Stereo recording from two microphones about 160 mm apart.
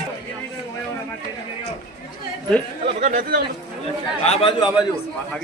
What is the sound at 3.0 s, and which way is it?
Speech, 55° right (ahead or behind).